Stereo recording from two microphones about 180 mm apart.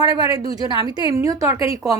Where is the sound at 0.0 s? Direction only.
20° right (ahead or behind).